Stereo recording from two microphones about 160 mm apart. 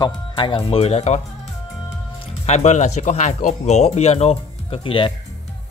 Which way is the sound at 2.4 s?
45° left (ahead or behind).